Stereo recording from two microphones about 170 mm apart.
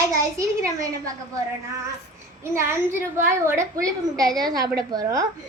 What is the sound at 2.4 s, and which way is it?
A woman's voice, 15° right (ahead or behind).